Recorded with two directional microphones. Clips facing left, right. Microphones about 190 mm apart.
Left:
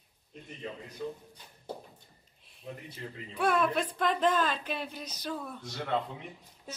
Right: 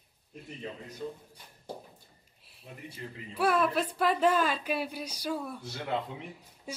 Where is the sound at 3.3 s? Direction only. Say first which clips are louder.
Right 1 dB; 5° right (ahead or behind).